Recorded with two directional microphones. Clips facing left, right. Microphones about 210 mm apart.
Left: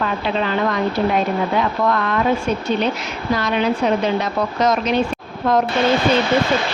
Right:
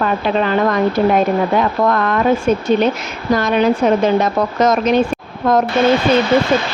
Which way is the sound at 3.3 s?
45° right (ahead or behind).